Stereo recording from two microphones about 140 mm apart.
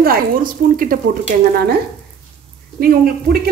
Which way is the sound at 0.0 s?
90° right.